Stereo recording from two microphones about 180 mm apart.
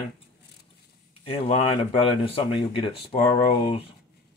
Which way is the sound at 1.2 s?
35° left (ahead or behind).